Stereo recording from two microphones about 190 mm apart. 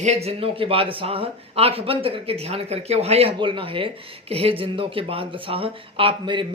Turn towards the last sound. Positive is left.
turn(degrees=-25)  # may be behind; listen again after turning